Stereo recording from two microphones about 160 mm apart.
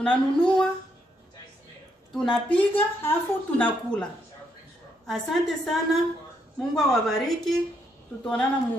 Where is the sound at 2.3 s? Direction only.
10° left (ahead or behind).